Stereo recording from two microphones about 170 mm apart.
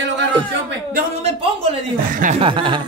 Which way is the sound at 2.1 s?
50° right (ahead or behind).